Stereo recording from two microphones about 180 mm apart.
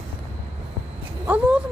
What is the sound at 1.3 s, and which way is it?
Speech, 10° right (ahead or behind).